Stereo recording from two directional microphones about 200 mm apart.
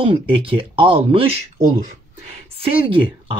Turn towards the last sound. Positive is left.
turn(degrees=-25)  # may be behind; listen again after turning